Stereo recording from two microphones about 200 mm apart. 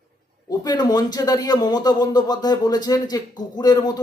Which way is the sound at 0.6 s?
20° left (ahead or behind).